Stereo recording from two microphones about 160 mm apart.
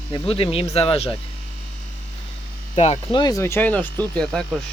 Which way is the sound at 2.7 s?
40° left (ahead or behind).